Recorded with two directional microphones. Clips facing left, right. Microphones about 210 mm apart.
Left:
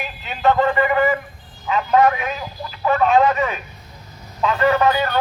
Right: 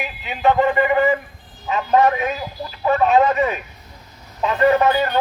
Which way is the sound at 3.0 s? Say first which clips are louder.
Even; 25° right (ahead or behind).